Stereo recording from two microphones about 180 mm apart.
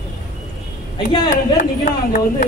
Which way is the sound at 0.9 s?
25° left (ahead or behind).